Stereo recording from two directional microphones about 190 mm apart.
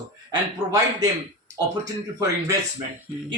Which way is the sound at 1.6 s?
20° right (ahead or behind).